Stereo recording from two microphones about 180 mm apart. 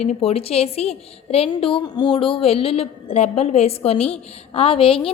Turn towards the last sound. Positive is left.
turn(degrees=30)  # may be behind; listen again after turning